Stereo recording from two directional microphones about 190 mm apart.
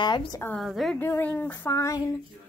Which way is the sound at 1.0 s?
10° left (ahead or behind).